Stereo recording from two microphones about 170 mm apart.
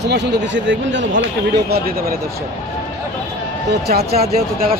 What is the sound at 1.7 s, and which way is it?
Speech, 60° right (ahead or behind).